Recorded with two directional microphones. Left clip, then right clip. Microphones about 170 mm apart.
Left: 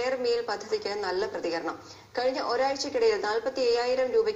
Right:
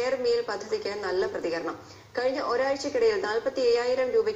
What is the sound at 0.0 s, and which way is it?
A woman's voice, 20° left (ahead or behind).